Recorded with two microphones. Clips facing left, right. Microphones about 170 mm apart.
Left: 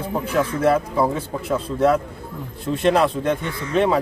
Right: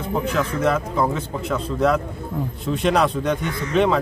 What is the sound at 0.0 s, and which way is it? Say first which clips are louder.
A man's voice: left 1 dB; 10° left (ahead or behind).